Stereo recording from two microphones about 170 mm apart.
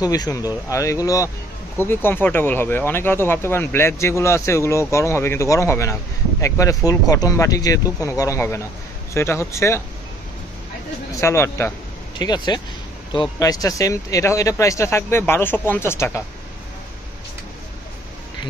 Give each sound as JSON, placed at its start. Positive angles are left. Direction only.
{"t": 0.0, "sound": "speech", "side_deg": 20}
{"t": 11.1, "sound": "speech", "side_deg": 15}